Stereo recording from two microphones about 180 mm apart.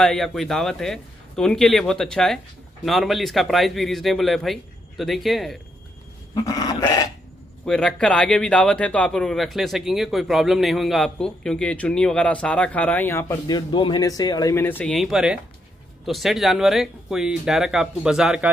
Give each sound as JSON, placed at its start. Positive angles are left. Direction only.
{"t": 0.0, "sound": "a man's voice", "side_deg": 0}
{"t": 6.3, "sound": "speech", "side_deg": 20}
{"t": 7.6, "sound": "a man's voice", "side_deg": 5}
{"t": 13.3, "sound": "a man's voice", "side_deg": 25}